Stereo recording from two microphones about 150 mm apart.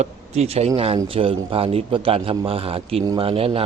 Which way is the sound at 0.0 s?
45° right (ahead or behind).